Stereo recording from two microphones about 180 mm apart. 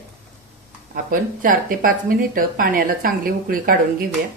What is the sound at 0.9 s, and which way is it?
Speech, 50° right (ahead or behind).